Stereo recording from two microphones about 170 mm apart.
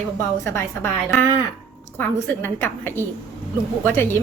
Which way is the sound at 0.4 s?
15° left (ahead or behind).